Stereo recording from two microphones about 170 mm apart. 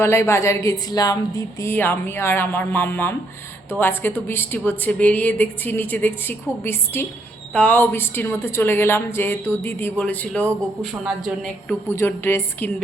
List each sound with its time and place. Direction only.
0.0 s a woman's voice: 15° left (ahead or behind)